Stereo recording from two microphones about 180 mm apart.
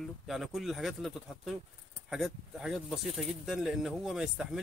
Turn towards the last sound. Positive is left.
turn(degrees=-5)  # may be behind; listen again after turning